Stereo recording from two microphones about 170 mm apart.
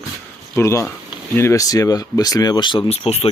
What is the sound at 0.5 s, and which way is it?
Speech, 15° left (ahead or behind).